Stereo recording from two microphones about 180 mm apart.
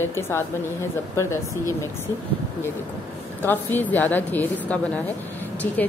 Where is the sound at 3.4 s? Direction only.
10° left (ahead or behind).